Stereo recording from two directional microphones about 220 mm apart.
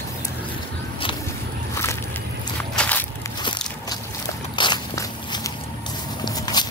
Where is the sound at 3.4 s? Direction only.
20° left (ahead or behind).